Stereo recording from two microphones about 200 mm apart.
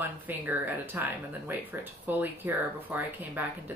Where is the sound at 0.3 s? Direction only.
10° right (ahead or behind).